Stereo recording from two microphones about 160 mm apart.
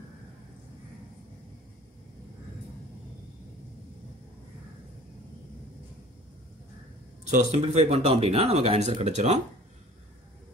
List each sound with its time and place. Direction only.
7.2 s speech: 50° right (ahead or behind)
7.6 s speech: 40° right (ahead or behind)